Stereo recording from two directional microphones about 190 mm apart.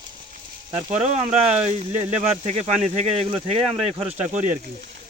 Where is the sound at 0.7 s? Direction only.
35° right (ahead or behind).